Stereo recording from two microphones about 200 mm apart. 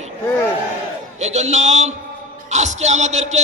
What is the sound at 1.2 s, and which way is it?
A man's voice, 35° right (ahead or behind).